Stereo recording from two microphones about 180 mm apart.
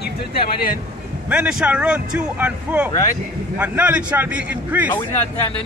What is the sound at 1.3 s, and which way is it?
A man's voice, 5° right (ahead or behind).